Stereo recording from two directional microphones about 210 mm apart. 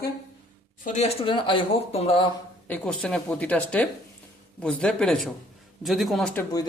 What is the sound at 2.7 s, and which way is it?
Speech, 5° left (ahead or behind).